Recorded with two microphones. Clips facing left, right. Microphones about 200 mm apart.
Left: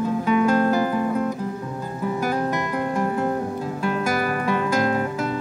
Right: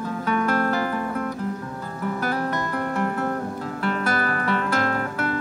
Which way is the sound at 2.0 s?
15° left (ahead or behind).